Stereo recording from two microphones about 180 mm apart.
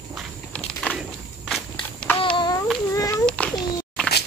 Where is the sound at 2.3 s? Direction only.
25° left (ahead or behind).